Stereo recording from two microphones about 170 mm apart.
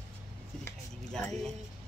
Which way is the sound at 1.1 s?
5° left (ahead or behind).